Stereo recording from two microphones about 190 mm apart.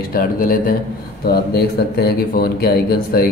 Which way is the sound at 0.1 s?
50° left (ahead or behind).